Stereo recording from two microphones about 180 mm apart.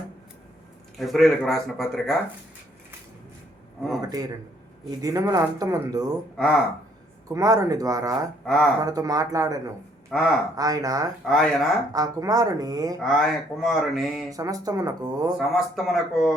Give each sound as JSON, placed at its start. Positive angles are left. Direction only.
{"t": 0.9, "sound": "speech", "side_deg": 0}
{"t": 4.0, "sound": "speech", "side_deg": -20}
{"t": 6.3, "sound": "speech", "side_deg": 5}
{"t": 7.3, "sound": "speech", "side_deg": -20}
{"t": 8.4, "sound": "speech", "side_deg": 5}
{"t": 8.8, "sound": "speech", "side_deg": -20}
{"t": 10.1, "sound": "speech", "side_deg": 0}
{"t": 10.6, "sound": "speech", "side_deg": -20}
{"t": 11.3, "sound": "speech", "side_deg": 0}
{"t": 11.9, "sound": "speech", "side_deg": -20}
{"t": 13.0, "sound": "speech", "side_deg": 0}
{"t": 14.3, "sound": "speech", "side_deg": -20}
{"t": 15.4, "sound": "speech", "side_deg": 0}